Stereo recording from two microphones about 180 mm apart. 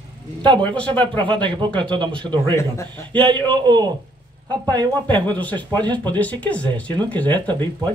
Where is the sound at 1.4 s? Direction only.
25° right (ahead or behind).